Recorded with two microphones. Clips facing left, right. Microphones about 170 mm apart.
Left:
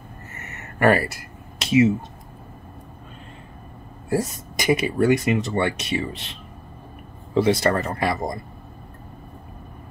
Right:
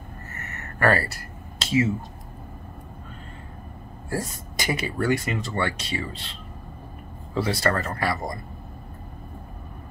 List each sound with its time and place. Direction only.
0.5 s a sound: 20° left (ahead or behind)
4.1 s speech: 20° left (ahead or behind)
7.3 s speech: 20° left (ahead or behind)